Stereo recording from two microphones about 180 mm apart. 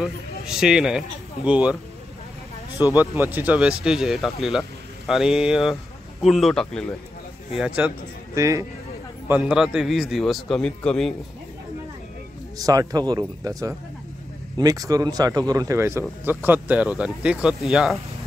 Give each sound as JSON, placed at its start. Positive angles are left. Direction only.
{"t": 0.0, "sound": "speech", "side_deg": -5}
{"t": 3.0, "sound": "speech", "side_deg": -10}
{"t": 8.4, "sound": "speech", "side_deg": -15}
{"t": 9.3, "sound": "speech", "side_deg": -5}
{"t": 12.5, "sound": "speech", "side_deg": -20}